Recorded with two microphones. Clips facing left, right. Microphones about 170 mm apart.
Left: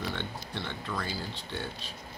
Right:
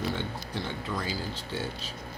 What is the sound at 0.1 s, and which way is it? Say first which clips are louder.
Speech: right 3 dB; 10° right (ahead or behind).